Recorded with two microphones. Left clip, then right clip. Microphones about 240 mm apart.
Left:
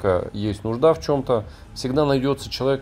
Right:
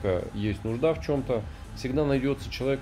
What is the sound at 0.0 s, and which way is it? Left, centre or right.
Speech, centre.